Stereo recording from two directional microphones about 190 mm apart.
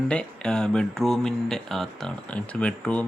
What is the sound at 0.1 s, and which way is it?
Speech, 5° left (ahead or behind).